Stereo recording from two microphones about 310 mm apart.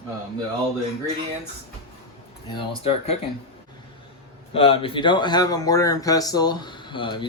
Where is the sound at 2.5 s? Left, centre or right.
Centre.